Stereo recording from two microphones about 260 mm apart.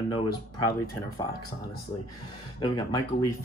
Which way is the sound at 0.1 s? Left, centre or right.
Centre.